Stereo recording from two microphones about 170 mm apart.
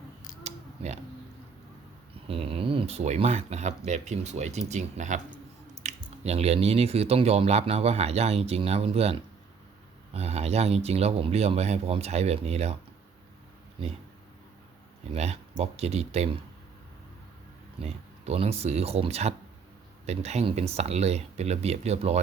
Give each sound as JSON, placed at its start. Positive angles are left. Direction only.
{"t": 0.4, "sound": "a sound", "side_deg": -40}
{"t": 2.2, "sound": "speech", "side_deg": -35}
{"t": 10.2, "sound": "speech", "side_deg": -40}
{"t": 13.8, "sound": "speech", "side_deg": -30}
{"t": 15.1, "sound": "speech", "side_deg": -40}
{"t": 17.8, "sound": "speech", "side_deg": -35}